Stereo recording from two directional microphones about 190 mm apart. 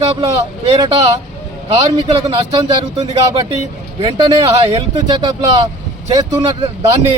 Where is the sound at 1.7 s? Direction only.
25° right (ahead or behind).